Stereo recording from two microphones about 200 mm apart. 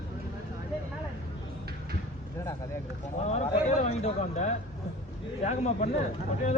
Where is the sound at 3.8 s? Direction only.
35° left (ahead or behind).